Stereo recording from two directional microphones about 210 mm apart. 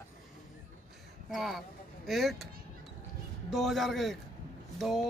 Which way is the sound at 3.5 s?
Centre (ahead or behind).